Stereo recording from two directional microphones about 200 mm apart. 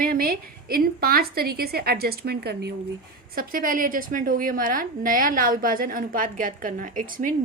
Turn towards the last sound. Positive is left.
turn(degrees=-40)  # may be behind; listen again after turning